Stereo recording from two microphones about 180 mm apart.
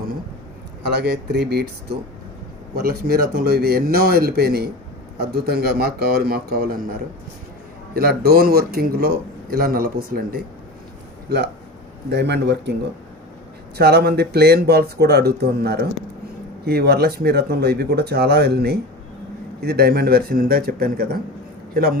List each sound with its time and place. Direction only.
0.9 s a man's voice: 70° right (ahead or behind)
7.9 s a man's voice: 60° right (ahead or behind)
13.7 s a man's voice: 65° right (ahead or behind)